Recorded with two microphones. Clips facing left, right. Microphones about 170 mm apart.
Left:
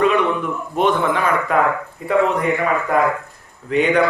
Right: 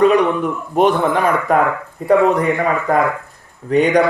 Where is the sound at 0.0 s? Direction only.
40° right (ahead or behind).